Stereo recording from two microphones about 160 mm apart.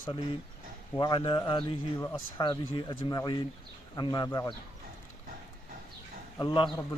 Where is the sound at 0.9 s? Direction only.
25° left (ahead or behind).